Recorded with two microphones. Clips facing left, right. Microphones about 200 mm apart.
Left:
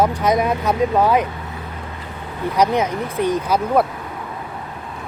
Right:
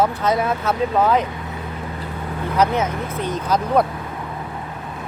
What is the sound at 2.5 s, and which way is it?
Speech, 15° left (ahead or behind).